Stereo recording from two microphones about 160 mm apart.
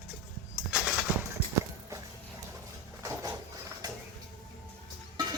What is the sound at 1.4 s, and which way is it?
Walk, 40° left (ahead or behind).